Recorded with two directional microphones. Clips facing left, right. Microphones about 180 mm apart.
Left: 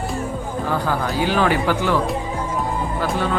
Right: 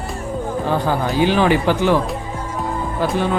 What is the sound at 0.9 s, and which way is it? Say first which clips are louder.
Speech: right 5 dB; 20° right (ahead or behind).